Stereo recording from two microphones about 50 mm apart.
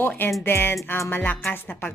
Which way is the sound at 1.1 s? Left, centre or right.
Left.